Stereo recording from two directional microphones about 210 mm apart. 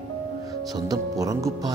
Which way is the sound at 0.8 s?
15° right (ahead or behind).